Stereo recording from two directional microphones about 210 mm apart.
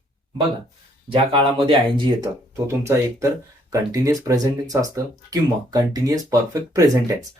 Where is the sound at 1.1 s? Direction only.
25° right (ahead or behind).